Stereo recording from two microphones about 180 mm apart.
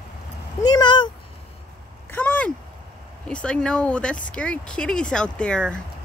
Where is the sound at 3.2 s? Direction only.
5° left (ahead or behind).